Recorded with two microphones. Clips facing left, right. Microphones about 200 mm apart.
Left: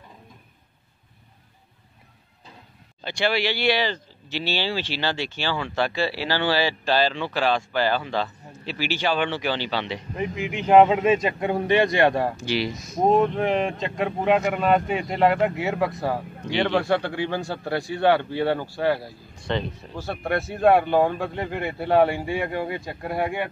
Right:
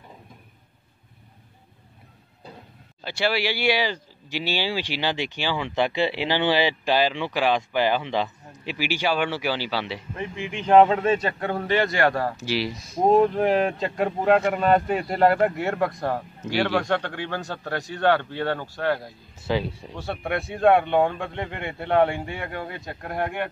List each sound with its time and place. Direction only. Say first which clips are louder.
3.0 s speech: left 1 dB; 5° right (ahead or behind)
10.5 s a man's voice: even; 10° left (ahead or behind)
12.4 s a man's voice: left 1 dB; 5° right (ahead or behind)
12.7 s speech: left 1 dB; 30° right (ahead or behind)
13.0 s a man's voice: right 1 dB; centre (ahead or behind)
16.8 s a man's voice: left 3 dB; 10° left (ahead or behind)
19.3 s a man's voice: right 2 dB; 5° right (ahead or behind)